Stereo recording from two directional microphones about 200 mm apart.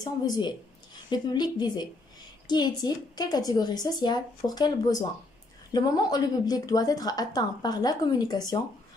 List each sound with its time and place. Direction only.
0.0 s a woman's voice: 20° left (ahead or behind)